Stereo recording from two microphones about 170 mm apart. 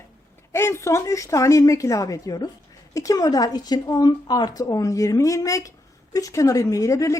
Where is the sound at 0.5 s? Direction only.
15° left (ahead or behind).